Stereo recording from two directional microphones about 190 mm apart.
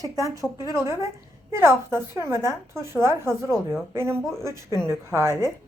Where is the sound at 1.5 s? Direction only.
15° right (ahead or behind).